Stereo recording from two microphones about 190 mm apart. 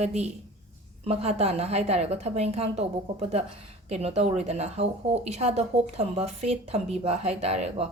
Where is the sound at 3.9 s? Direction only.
35° right (ahead or behind).